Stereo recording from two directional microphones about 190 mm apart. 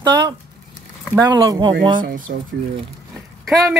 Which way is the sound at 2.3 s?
50° right (ahead or behind).